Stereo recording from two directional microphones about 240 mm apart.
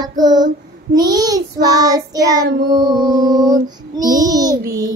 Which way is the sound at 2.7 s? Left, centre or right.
Centre.